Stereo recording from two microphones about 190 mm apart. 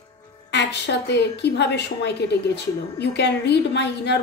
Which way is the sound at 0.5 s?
65° left (ahead or behind).